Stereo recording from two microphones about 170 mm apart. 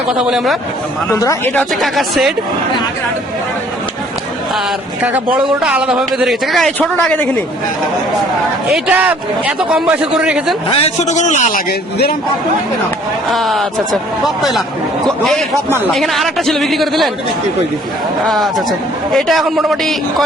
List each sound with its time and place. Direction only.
0.2 s a man's voice: 5° right (ahead or behind)
1.1 s speech: 20° left (ahead or behind)
1.5 s a man's voice: centre (ahead or behind)
5.0 s a man's voice: 5° right (ahead or behind); by 7.3 s 10° left (ahead or behind)
8.9 s a man's voice: 10° right (ahead or behind)
10.7 s a man's voice: 35° left (ahead or behind)
13.3 s a man's voice: centre (ahead or behind)
18.3 s a man's voice: centre (ahead or behind)